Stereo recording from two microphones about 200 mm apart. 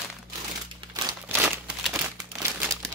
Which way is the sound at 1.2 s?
10° right (ahead or behind).